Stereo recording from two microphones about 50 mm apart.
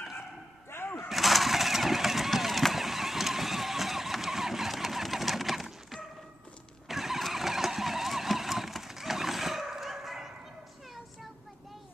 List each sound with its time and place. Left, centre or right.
1.0 s vehicle: centre